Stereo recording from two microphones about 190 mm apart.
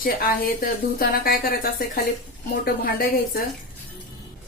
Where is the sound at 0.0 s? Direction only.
50° left (ahead or behind).